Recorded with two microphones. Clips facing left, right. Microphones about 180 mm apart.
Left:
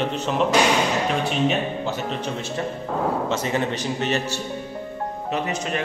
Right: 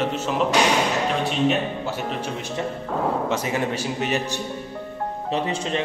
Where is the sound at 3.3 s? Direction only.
10° right (ahead or behind).